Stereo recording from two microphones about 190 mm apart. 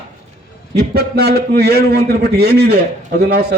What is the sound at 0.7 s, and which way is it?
A man's voice, 60° right (ahead or behind).